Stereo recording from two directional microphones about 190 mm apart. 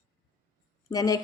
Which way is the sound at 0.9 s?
20° left (ahead or behind).